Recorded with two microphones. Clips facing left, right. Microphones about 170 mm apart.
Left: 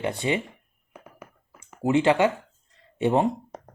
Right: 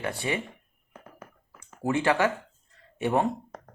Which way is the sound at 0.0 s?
20° left (ahead or behind).